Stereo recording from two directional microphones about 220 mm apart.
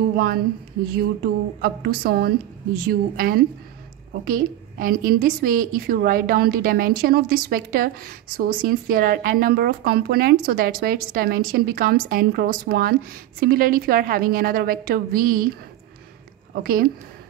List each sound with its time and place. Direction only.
0.9 s a woman's voice: 45° right (ahead or behind)
16.5 s a woman's voice: 45° right (ahead or behind)